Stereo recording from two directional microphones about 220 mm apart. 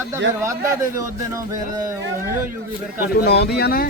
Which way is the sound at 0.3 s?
15° right (ahead or behind).